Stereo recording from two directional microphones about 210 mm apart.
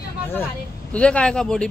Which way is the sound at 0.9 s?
5° left (ahead or behind).